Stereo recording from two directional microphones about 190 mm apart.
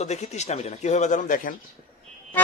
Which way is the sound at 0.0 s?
35° left (ahead or behind).